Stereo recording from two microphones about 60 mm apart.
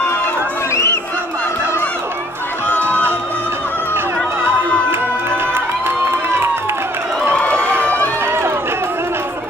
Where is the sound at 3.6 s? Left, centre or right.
Left.